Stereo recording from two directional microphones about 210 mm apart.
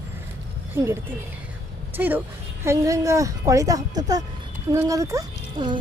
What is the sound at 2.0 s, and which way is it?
Speech, 10° right (ahead or behind).